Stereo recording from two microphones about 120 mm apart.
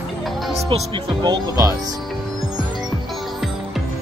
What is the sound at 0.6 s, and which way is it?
Speech, 45° right (ahead or behind).